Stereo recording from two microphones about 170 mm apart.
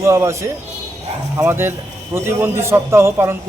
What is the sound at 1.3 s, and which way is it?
Speech, 15° right (ahead or behind).